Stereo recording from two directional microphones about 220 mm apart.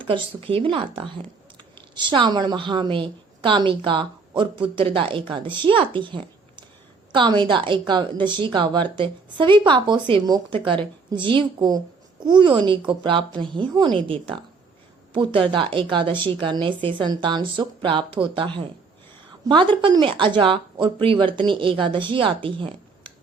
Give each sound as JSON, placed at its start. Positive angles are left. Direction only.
{"t": 0.0, "sound": "speech", "side_deg": -25}